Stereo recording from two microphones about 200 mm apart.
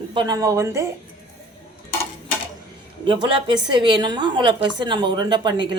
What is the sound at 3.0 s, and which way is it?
A woman's voice, 25° right (ahead or behind).